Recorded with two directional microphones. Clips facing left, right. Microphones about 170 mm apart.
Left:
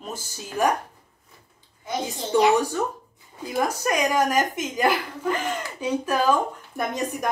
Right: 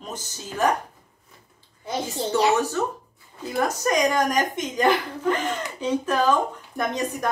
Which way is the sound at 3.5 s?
10° left (ahead or behind).